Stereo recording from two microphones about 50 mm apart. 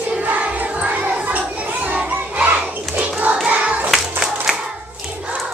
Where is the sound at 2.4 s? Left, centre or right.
Right.